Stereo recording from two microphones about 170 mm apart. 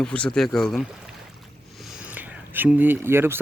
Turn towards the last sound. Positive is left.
turn(degrees=-15)  # may be behind; listen again after turning